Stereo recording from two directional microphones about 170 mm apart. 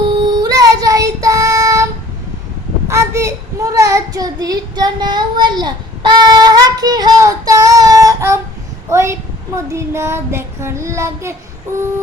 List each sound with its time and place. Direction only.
0.1 s child singing: 25° right (ahead or behind)